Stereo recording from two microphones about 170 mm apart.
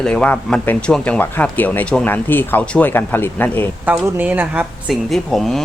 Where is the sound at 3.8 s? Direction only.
10° right (ahead or behind).